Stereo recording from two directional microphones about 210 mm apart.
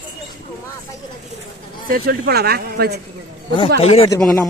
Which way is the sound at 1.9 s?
45° right (ahead or behind).